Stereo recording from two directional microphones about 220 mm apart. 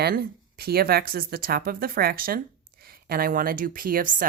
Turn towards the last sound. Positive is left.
turn(degrees=-35)  # may be behind; listen again after turning